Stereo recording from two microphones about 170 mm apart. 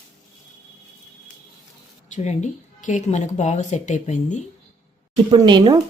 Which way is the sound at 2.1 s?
45° left (ahead or behind).